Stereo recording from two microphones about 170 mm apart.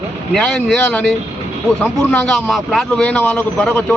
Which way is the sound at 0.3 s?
5° left (ahead or behind).